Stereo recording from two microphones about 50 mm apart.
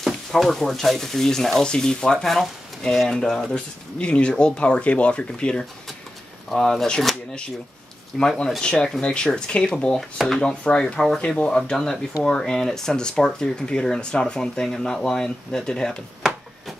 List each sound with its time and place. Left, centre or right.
0.0 s speech: centre
3.5 s speech: left
6.5 s speech: centre
8.1 s speech: centre
8.5 s speech: centre
9.9 s speech: centre
10.4 s speech: centre